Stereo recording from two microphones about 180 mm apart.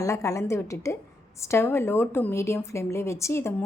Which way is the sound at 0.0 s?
15° left (ahead or behind).